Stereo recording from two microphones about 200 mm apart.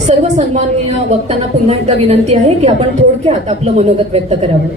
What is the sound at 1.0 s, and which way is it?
A woman's voice, 30° right (ahead or behind).